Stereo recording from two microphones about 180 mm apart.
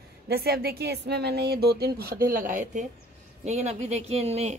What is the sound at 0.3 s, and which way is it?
A man's voice, 60° right (ahead or behind).